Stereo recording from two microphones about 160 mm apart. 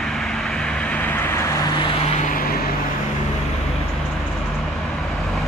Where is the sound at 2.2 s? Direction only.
60° left (ahead or behind).